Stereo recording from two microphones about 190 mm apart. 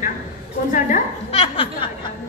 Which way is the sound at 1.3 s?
30° left (ahead or behind).